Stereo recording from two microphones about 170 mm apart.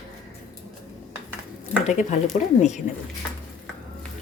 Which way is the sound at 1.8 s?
40° left (ahead or behind).